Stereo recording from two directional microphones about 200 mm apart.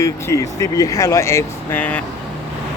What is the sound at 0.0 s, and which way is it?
Speech, 15° left (ahead or behind).